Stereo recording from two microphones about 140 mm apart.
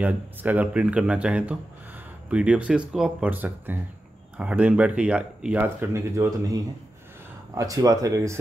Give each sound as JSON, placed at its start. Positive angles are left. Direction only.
{"t": 0.0, "sound": "speech", "side_deg": -10}